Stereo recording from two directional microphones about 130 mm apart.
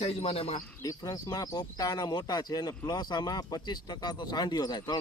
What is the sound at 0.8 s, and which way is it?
Speech, 25° left (ahead or behind).